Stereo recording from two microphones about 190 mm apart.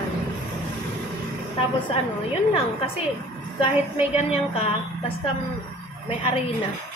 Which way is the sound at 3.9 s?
30° left (ahead or behind).